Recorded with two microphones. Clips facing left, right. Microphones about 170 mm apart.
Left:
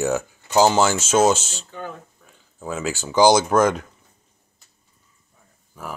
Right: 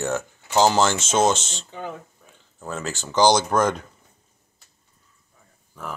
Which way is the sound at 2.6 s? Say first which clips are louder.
Left 4 dB; 10° left (ahead or behind).